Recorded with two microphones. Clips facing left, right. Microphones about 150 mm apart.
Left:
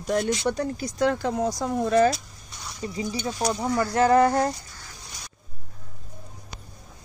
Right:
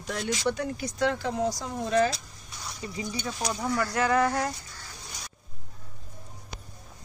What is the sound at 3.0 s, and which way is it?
Speech, 30° left (ahead or behind).